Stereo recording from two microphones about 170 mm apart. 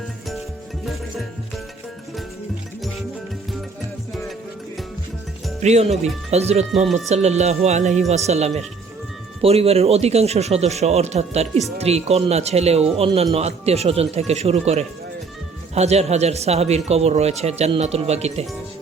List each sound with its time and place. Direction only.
5.6 s speech: 40° right (ahead or behind)